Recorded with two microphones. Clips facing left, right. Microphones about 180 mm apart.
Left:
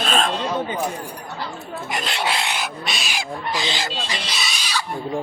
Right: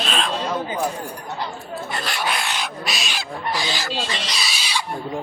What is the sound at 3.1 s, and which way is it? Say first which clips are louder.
Speech: even; 10° left (ahead or behind).